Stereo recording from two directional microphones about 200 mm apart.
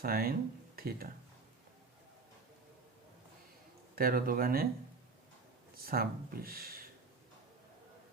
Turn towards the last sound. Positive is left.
turn(degrees=-50)  # may be behind; listen again after turning